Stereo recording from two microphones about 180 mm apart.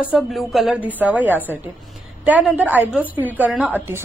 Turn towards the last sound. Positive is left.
turn(degrees=-10)  # may be behind; listen again after turning